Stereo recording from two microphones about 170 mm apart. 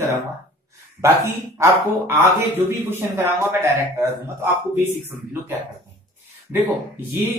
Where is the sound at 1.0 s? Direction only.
15° right (ahead or behind).